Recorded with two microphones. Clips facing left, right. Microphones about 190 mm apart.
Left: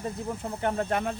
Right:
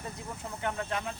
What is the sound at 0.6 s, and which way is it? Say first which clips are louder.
Speech: left 6 dB; 50° left (ahead or behind).